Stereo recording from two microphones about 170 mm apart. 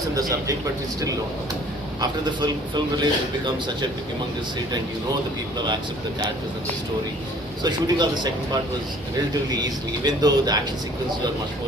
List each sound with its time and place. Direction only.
0.2 s speech: 20° right (ahead or behind)
2.0 s speech: 25° right (ahead or behind)
5.5 s speech: 25° right (ahead or behind)
7.6 s speech: 25° right (ahead or behind)
9.5 s speech: 20° right (ahead or behind)